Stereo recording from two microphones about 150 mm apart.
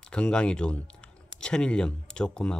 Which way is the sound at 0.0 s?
5° left (ahead or behind).